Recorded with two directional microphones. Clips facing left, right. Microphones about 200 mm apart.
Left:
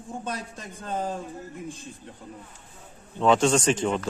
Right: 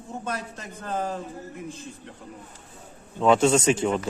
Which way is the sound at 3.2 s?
5° right (ahead or behind).